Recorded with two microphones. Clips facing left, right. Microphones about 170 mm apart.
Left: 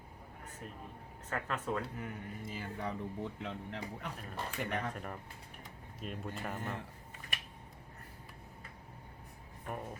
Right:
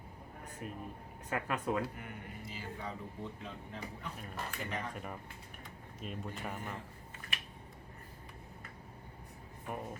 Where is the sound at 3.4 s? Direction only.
70° left (ahead or behind).